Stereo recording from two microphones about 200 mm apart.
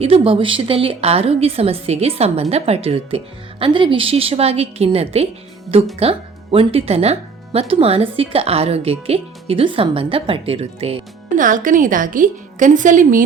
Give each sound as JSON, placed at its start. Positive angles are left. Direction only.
{"t": 0.0, "sound": "a woman's voice", "side_deg": -30}